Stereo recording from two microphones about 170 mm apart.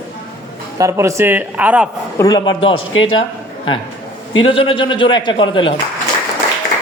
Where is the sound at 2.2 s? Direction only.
25° left (ahead or behind).